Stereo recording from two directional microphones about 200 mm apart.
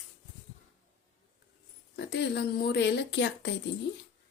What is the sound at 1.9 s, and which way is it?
Speech, 60° left (ahead or behind).